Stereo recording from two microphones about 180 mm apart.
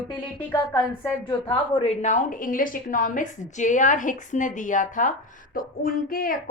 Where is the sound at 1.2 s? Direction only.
30° left (ahead or behind).